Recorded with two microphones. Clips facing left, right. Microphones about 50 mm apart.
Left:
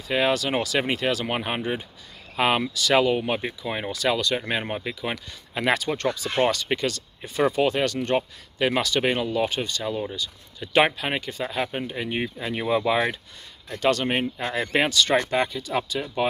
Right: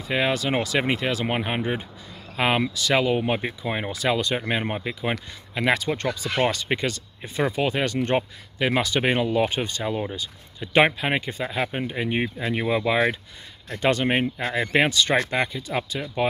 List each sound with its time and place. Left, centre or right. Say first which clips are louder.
0.1 s speech: left 1 dB; centre
8.5 s speech: even; centre
13.7 s speech: right 1 dB; centre
14.4 s speech: right 1 dB; centre